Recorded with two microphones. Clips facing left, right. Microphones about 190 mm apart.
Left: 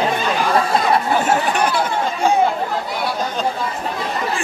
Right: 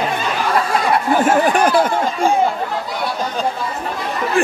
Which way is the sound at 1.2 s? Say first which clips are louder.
Right 4 dB; 50° right (ahead or behind).